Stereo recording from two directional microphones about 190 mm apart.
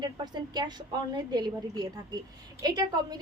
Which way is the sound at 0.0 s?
25° right (ahead or behind).